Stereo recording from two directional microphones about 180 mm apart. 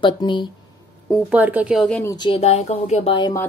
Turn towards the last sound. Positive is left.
turn(degrees=30)  # may be behind; listen again after turning